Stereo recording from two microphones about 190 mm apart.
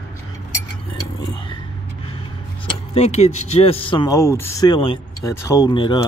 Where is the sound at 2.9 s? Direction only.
35° left (ahead or behind).